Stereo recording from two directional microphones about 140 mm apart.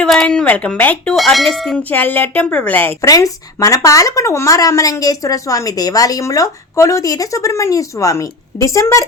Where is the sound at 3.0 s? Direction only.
25° left (ahead or behind).